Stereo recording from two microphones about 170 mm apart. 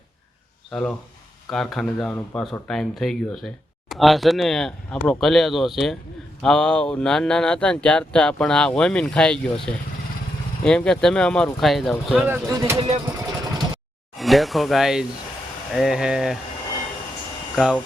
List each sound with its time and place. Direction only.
0.7 s speech: 5° left (ahead or behind)
12.3 s speech: 15° right (ahead or behind)
14.2 s speech: centre (ahead or behind)
17.5 s speech: centre (ahead or behind)